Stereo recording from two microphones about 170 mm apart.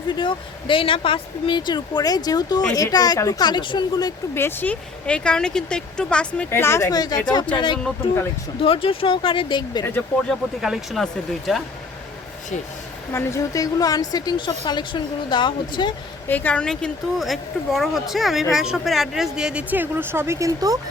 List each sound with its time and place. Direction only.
0.1 s a woman's voice: 30° left (ahead or behind)
8.6 s speech: 35° left (ahead or behind)
10.2 s speech: centre (ahead or behind)
13.1 s speech: 15° left (ahead or behind)
16.3 s speech: 10° left (ahead or behind); by 20.7 s 20° right (ahead or behind)